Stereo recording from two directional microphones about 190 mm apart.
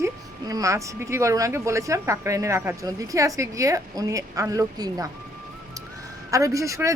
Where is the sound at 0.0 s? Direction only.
20° right (ahead or behind).